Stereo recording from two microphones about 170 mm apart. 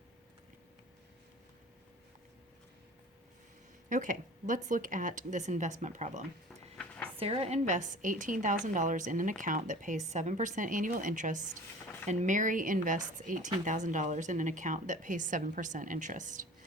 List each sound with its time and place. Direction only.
3.8 s speech: 50° right (ahead or behind)
7.2 s speech: 35° right (ahead or behind)